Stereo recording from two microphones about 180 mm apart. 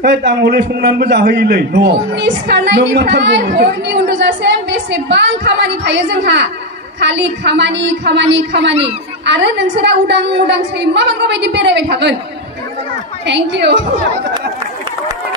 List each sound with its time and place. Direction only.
0.0 s a woman's voice: 70° right (ahead or behind)
13.2 s a woman's voice: 75° right (ahead or behind)